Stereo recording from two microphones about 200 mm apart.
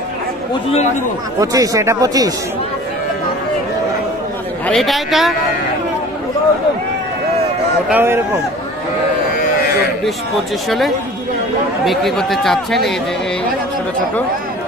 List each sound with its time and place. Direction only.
1.4 s speech: 15° right (ahead or behind)
4.6 s speech: centre (ahead or behind)
7.9 s speech: 10° right (ahead or behind)
11.8 s speech: centre (ahead or behind)